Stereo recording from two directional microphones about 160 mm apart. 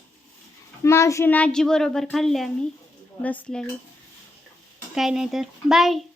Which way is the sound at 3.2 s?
5° left (ahead or behind).